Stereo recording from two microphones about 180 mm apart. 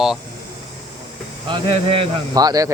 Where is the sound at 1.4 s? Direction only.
30° right (ahead or behind).